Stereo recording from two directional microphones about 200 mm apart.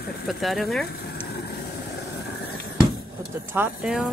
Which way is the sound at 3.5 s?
5° right (ahead or behind).